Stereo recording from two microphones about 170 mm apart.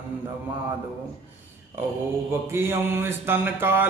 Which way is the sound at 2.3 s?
15° right (ahead or behind).